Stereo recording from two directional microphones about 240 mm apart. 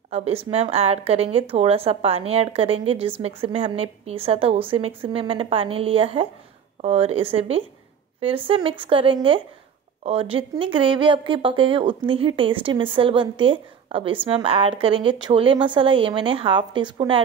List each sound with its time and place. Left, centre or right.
0.1 s speech: right